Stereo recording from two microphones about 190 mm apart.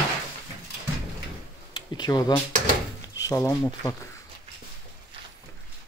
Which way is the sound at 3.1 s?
15° left (ahead or behind).